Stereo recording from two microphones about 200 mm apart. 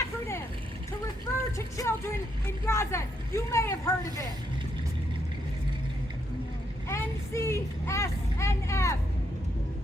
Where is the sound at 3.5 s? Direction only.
15° left (ahead or behind).